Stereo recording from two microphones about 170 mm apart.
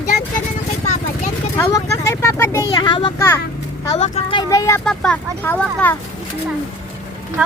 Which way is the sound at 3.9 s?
40° left (ahead or behind).